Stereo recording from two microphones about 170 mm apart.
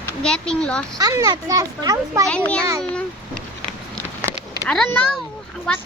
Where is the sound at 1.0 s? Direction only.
20° right (ahead or behind).